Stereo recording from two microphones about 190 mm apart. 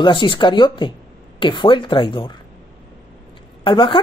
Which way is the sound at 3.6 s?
25° left (ahead or behind).